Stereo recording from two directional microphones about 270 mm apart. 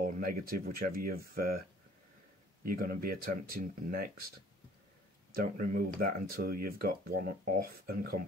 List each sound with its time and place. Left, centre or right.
0.0 s speech: right
2.6 s speech: right
5.3 s speech: right